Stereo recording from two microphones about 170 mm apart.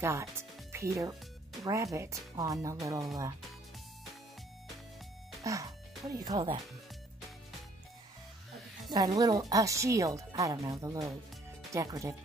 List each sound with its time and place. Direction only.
0.0 s speech: 15° right (ahead or behind)
5.4 s speech: 20° right (ahead or behind)
8.9 s speech: 20° right (ahead or behind)